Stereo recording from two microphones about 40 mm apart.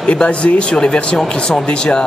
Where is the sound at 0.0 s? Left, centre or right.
Left.